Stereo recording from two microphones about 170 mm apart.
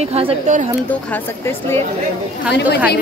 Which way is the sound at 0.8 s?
10° left (ahead or behind).